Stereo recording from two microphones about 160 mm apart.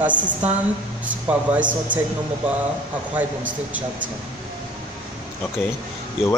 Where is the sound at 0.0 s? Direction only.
10° right (ahead or behind).